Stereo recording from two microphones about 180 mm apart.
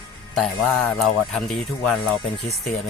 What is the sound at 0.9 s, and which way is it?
Speech, centre (ahead or behind).